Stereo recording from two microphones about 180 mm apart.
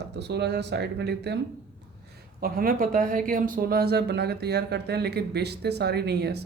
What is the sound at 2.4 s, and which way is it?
Speech, 55° right (ahead or behind).